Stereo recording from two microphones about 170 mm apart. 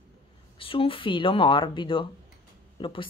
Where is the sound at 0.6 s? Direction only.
30° left (ahead or behind).